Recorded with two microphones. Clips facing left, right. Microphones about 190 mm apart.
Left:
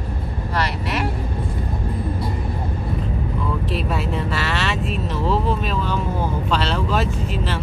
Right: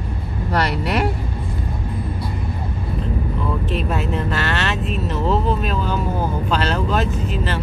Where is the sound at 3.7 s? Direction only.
Centre (ahead or behind).